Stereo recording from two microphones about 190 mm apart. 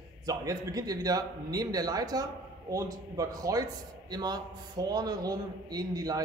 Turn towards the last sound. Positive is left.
turn(degrees=-20)  # may be behind; listen again after turning